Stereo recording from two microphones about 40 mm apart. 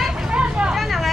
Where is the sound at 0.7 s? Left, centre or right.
Centre.